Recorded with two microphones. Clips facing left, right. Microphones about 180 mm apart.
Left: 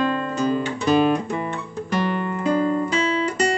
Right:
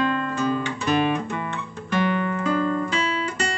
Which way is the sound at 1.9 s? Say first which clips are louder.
Right 1 dB; 35° left (ahead or behind).